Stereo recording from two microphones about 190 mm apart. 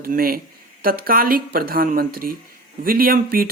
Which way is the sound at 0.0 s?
50° right (ahead or behind).